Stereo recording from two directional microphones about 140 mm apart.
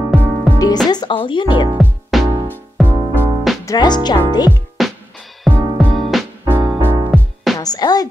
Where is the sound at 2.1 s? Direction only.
Centre (ahead or behind).